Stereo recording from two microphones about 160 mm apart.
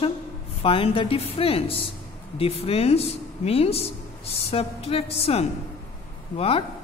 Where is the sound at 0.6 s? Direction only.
35° left (ahead or behind).